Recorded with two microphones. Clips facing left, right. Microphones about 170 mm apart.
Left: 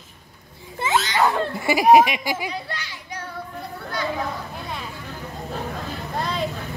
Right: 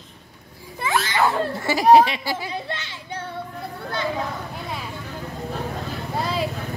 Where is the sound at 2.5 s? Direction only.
25° right (ahead or behind).